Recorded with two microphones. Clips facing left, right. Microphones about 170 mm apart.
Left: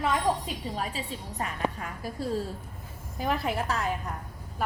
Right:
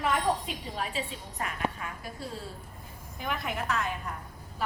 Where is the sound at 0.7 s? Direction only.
40° left (ahead or behind).